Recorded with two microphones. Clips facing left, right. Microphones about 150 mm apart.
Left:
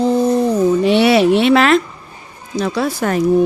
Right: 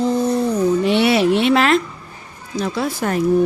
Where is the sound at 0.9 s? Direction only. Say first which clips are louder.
Left 5 dB; 90° left.